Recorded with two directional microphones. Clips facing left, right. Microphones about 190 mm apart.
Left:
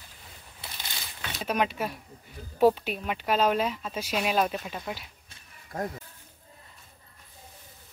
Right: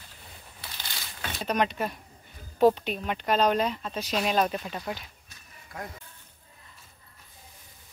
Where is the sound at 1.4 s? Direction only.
5° left (ahead or behind).